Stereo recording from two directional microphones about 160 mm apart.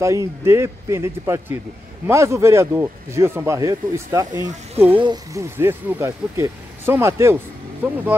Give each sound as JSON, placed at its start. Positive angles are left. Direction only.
{"t": 0.0, "sound": "speech", "side_deg": -20}
{"t": 4.8, "sound": "speech", "side_deg": -30}